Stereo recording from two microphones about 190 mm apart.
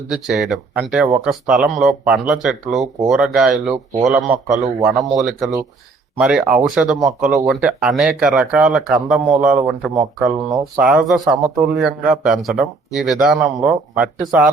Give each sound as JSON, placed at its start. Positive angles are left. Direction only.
{"t": 0.1, "sound": "speech", "side_deg": 0}
{"t": 13.6, "sound": "speech", "side_deg": -15}
{"t": 14.0, "sound": "speech", "side_deg": -5}